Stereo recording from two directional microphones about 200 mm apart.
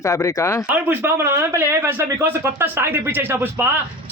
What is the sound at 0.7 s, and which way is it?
A man's voice, 10° right (ahead or behind).